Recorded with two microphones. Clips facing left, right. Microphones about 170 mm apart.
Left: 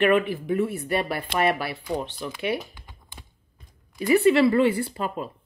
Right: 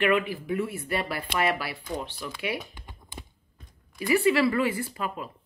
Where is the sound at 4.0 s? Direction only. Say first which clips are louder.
Left 4 dB; 25° left (ahead or behind).